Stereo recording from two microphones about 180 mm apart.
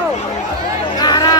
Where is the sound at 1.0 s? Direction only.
20° left (ahead or behind).